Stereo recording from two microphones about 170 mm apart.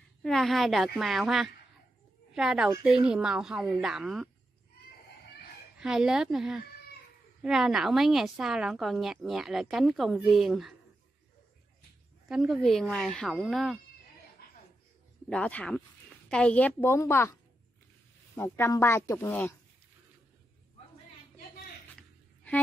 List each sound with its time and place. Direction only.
0.2 s a woman's voice: centre (ahead or behind)
5.8 s a woman's voice: 5° right (ahead or behind)
12.3 s a woman's voice: 5° right (ahead or behind)
15.2 s a woman's voice: 5° left (ahead or behind)